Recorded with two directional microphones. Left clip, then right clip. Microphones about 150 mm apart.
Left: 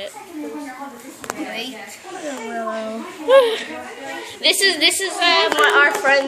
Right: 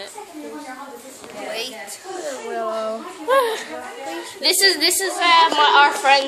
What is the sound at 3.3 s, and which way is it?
A woman's voice, 25° right (ahead or behind).